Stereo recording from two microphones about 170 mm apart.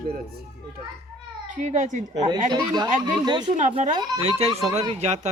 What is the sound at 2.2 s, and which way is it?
Speech, 25° right (ahead or behind).